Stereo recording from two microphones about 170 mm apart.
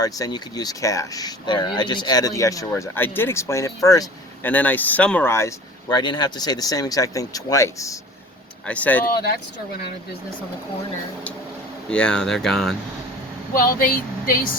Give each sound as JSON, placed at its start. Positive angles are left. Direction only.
{"t": 0.0, "sound": "speech", "side_deg": 25}
{"t": 4.4, "sound": "speech", "side_deg": 10}
{"t": 8.6, "sound": "speech", "side_deg": 10}
{"t": 11.9, "sound": "speech", "side_deg": 5}
{"t": 13.6, "sound": "speech", "side_deg": 55}